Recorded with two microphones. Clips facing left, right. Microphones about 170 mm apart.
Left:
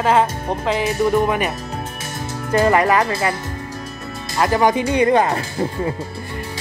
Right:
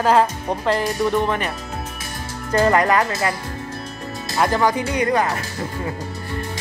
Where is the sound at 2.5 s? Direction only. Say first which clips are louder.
Left 1 dB; 15° left (ahead or behind).